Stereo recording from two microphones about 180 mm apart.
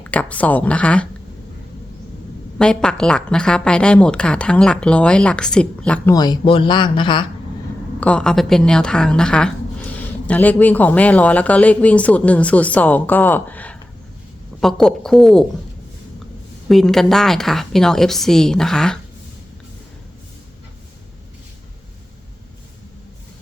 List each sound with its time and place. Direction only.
0.0 s a woman's voice: 10° left (ahead or behind)
2.6 s a woman's voice: 5° left (ahead or behind)
6.1 s speech: 25° left (ahead or behind)
8.0 s a woman's voice: 5° left (ahead or behind)
16.6 s a woman's voice: centre (ahead or behind)